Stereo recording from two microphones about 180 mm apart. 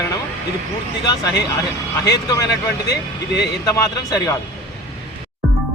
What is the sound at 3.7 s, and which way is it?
Speech, 20° left (ahead or behind).